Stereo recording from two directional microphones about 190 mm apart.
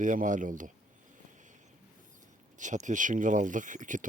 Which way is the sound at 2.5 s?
40° right (ahead or behind).